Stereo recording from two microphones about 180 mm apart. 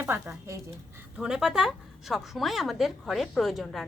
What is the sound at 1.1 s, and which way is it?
A woman's voice, 5° right (ahead or behind).